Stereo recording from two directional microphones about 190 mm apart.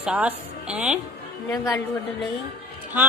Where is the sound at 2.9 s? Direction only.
10° right (ahead or behind).